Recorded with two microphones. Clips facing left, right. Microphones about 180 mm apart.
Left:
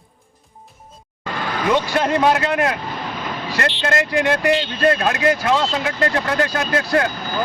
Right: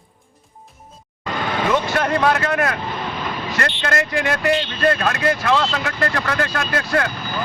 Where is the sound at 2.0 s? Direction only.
20° left (ahead or behind).